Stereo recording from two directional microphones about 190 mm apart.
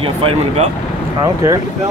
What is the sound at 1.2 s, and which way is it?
Speech, 15° right (ahead or behind).